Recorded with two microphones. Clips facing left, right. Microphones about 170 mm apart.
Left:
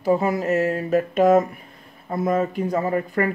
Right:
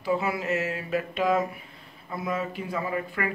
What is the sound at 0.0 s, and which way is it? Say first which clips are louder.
Speech: left 7 dB; 45° left (ahead or behind).